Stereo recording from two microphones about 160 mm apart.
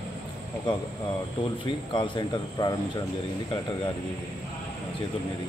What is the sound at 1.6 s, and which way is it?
Speech, 30° left (ahead or behind).